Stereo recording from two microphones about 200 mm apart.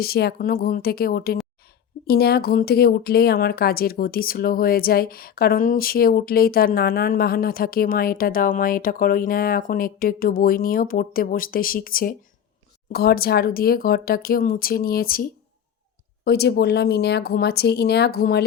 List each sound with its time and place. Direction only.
0.0 s speech: 50° left (ahead or behind)